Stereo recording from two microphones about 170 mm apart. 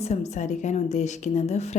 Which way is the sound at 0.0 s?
40° left (ahead or behind).